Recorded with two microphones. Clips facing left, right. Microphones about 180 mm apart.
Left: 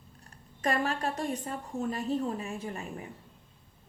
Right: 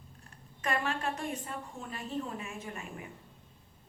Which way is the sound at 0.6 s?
40° left (ahead or behind).